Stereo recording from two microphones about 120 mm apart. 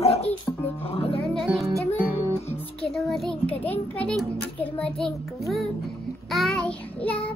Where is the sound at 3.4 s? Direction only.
15° left (ahead or behind).